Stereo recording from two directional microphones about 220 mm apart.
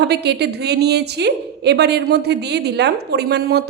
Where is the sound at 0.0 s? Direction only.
50° right (ahead or behind).